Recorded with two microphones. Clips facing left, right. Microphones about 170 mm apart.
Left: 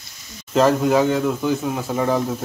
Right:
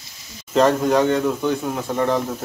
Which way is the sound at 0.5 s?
Centre (ahead or behind).